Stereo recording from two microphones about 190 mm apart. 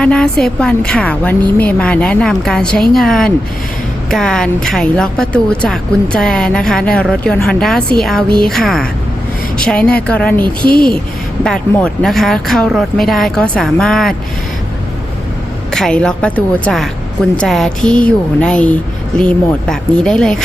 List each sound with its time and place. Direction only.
0.0 s a woman's voice: 5° left (ahead or behind)
10.4 s a woman's voice: 25° right (ahead or behind)
11.4 s a woman's voice: 5° left (ahead or behind)
15.7 s a woman's voice: 5° left (ahead or behind)